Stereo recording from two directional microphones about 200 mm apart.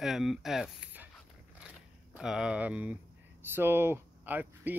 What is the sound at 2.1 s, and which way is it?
Speech, 5° right (ahead or behind).